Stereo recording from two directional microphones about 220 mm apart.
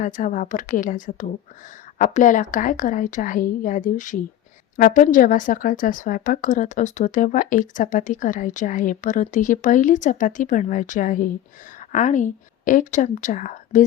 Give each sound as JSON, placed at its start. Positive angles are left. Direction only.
{"t": 0.0, "sound": "a woman's voice", "side_deg": 35}